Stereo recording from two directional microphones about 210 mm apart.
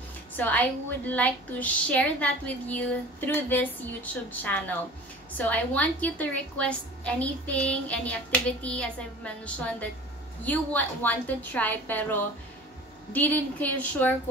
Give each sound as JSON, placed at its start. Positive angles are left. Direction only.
{"t": 0.4, "sound": "a woman's voice", "side_deg": 10}